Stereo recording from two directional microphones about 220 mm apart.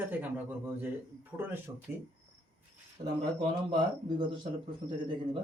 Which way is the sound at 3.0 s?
40° right (ahead or behind).